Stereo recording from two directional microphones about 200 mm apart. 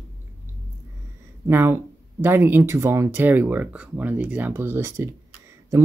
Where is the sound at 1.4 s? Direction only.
10° right (ahead or behind).